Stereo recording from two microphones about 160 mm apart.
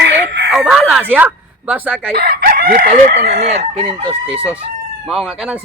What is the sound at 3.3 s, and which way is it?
Chicken, 40° right (ahead or behind).